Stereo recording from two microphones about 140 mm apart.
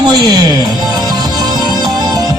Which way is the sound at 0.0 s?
30° right (ahead or behind).